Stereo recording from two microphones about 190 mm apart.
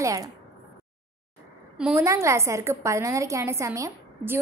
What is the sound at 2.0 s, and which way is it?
A woman's voice, 15° right (ahead or behind).